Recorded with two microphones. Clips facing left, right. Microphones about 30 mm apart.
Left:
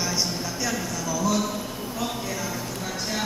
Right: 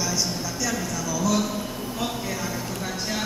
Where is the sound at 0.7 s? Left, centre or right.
Centre.